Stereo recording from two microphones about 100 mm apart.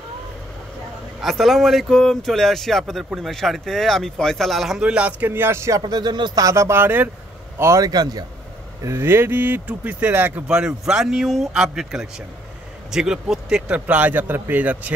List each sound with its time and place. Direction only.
1.2 s speech: centre (ahead or behind); by 5.8 s 25° right (ahead or behind)
5.8 s speech: 45° right (ahead or behind)
6.4 s a man's voice: 30° right (ahead or behind)
8.8 s speech: 25° right (ahead or behind)